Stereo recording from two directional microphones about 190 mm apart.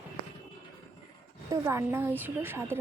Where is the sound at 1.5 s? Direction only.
15° right (ahead or behind).